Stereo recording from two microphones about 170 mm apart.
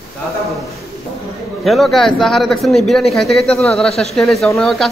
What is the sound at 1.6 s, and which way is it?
A man's voice, centre (ahead or behind).